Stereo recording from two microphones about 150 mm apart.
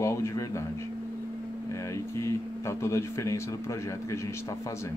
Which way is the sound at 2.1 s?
20° left (ahead or behind).